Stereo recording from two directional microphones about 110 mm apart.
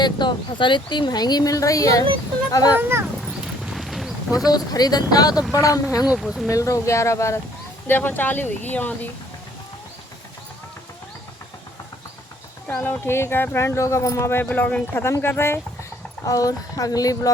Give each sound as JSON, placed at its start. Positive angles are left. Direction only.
{"t": 0.0, "sound": "speech", "side_deg": 45}
{"t": 3.2, "sound": "clip-clop", "side_deg": -5}
{"t": 4.4, "sound": "speech", "side_deg": 35}
{"t": 6.1, "sound": "speech", "side_deg": 0}
{"t": 6.5, "sound": "speech", "side_deg": 30}
{"t": 12.6, "sound": "speech", "side_deg": 15}
{"t": 16.2, "sound": "speech", "side_deg": 30}